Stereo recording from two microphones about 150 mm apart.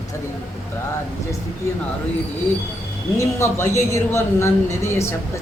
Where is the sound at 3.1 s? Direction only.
15° left (ahead or behind).